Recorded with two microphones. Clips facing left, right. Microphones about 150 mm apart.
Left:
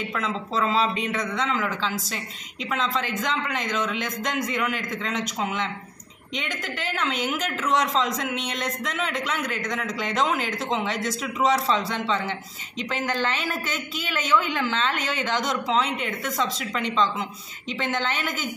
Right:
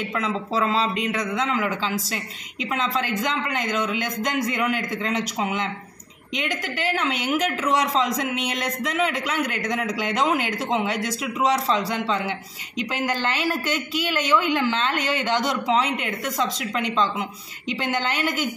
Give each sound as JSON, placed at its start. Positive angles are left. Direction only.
{"t": 0.2, "sound": "a man's voice", "side_deg": -5}